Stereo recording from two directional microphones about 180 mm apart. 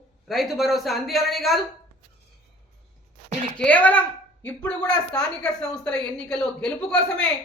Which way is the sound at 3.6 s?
10° left (ahead or behind).